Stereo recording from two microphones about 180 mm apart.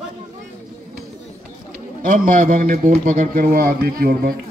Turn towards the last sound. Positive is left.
turn(degrees=-55)  # may be behind; listen again after turning